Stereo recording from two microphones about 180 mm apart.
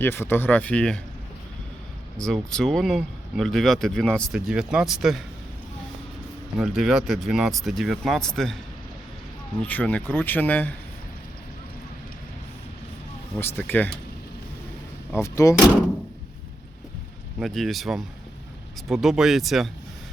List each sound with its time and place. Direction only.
0.0 s speech: 10° left (ahead or behind)
2.2 s speech: 5° left (ahead or behind)
6.6 s speech: 5° right (ahead or behind)
9.6 s speech: 5° left (ahead or behind)
13.4 s speech: 10° left (ahead or behind)
15.1 s speech: 15° left (ahead or behind)
17.4 s speech: centre (ahead or behind)